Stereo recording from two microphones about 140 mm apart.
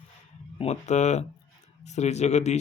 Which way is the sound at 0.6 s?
55° left (ahead or behind).